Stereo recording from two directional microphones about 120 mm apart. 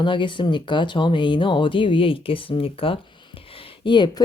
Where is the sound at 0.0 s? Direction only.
40° left (ahead or behind).